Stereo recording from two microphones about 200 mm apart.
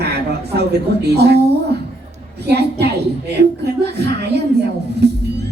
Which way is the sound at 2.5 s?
55° right (ahead or behind).